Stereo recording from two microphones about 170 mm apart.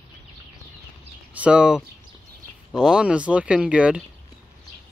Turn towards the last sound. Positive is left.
turn(degrees=-5)  # may be behind; listen again after turning